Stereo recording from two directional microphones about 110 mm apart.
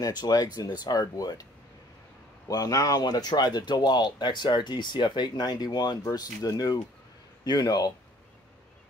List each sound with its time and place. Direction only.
0.2 s speech: 35° left (ahead or behind)